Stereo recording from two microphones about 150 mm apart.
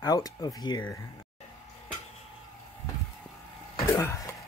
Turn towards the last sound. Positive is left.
turn(degrees=20)  # may be behind; listen again after turning